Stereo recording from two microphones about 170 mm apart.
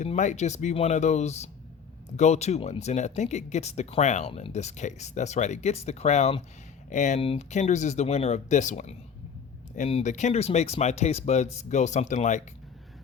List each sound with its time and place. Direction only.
0.0 s speech: 45° left (ahead or behind)